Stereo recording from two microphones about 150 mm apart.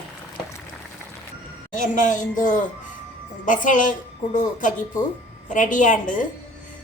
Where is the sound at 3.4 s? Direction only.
60° left (ahead or behind).